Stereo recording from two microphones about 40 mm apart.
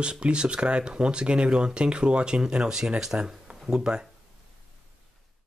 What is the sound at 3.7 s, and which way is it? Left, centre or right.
Speech, centre.